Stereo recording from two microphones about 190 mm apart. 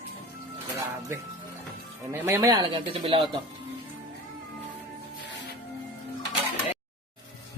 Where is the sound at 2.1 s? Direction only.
15° right (ahead or behind).